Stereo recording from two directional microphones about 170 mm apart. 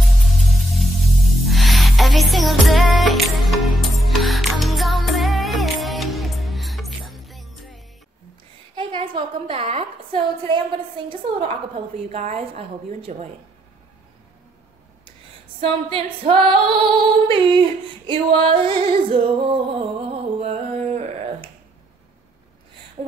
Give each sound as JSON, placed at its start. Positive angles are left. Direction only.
{"t": 0.7, "sound": "music", "side_deg": 0}
{"t": 8.7, "sound": "a sound", "side_deg": -30}
{"t": 12.1, "sound": "female singing", "side_deg": -35}
{"t": 15.6, "sound": "female singing", "side_deg": -30}